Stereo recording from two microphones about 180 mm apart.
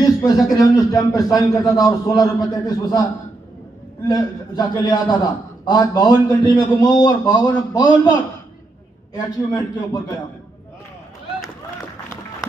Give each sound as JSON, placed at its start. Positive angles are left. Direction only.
{"t": 0.0, "sound": "speech", "side_deg": 20}
{"t": 4.1, "sound": "speech", "side_deg": 20}
{"t": 9.1, "sound": "speech", "side_deg": 20}